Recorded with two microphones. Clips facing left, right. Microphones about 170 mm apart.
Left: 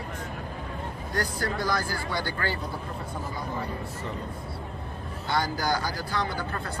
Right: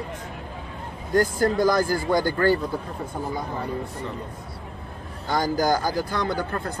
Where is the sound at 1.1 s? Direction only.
45° right (ahead or behind).